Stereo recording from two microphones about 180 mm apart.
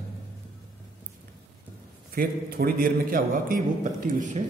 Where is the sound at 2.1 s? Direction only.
55° right (ahead or behind).